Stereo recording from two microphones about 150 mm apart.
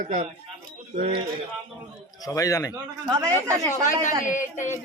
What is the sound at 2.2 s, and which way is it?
Speech, 25° left (ahead or behind).